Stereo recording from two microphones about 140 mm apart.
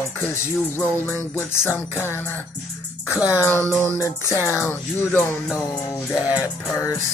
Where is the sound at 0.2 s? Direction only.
15° left (ahead or behind).